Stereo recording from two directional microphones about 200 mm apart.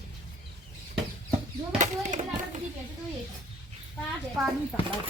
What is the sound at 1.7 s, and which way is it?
Children playing, 35° right (ahead or behind).